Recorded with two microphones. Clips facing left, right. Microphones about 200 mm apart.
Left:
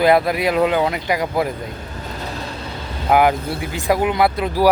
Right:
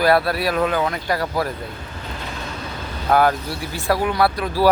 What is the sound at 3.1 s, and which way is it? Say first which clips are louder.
Speech: left 2 dB; 15° left (ahead or behind).